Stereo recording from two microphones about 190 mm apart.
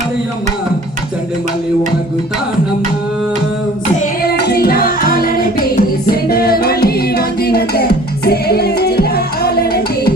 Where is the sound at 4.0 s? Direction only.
55° left (ahead or behind).